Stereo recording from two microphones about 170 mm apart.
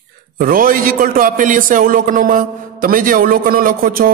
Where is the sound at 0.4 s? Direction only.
55° right (ahead or behind).